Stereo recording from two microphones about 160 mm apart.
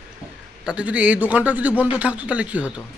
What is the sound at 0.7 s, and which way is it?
A man's voice, 5° right (ahead or behind).